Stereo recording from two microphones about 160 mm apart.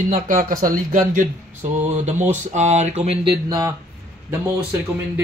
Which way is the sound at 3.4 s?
25° right (ahead or behind).